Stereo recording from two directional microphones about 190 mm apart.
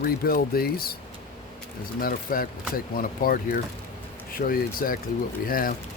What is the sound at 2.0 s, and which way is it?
Speech, 50° left (ahead or behind).